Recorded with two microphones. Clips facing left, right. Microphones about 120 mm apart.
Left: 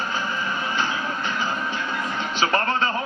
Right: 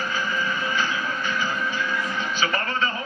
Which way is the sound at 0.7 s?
25° left (ahead or behind).